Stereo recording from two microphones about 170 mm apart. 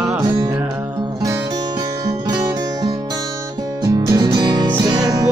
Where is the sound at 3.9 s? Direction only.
25° right (ahead or behind).